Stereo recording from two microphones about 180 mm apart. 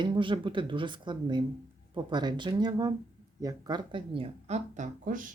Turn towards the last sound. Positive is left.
turn(degrees=-50)  # may be behind; listen again after turning